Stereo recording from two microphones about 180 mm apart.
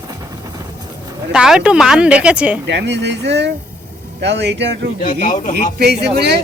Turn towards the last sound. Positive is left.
turn(degrees=-65)  # may be behind; listen again after turning